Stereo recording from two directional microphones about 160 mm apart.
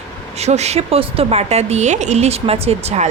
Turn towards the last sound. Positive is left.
turn(degrees=-40)  # may be behind; listen again after turning